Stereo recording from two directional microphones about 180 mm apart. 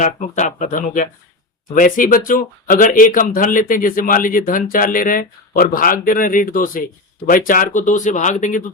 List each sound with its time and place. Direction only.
0.0 s speech: 45° left (ahead or behind)